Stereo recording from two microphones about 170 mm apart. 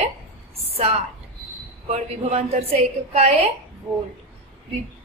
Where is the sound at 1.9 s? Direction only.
40° right (ahead or behind).